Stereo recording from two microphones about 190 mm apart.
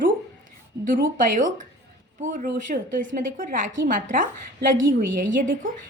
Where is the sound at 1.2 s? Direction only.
45° right (ahead or behind).